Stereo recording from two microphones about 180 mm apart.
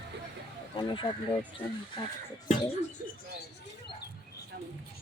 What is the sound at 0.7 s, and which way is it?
Speech, 25° left (ahead or behind).